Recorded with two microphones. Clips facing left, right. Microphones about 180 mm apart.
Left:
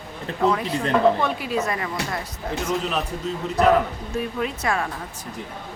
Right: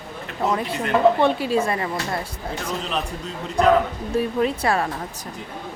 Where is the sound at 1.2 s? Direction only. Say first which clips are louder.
Right 5 dB; 30° right (ahead or behind).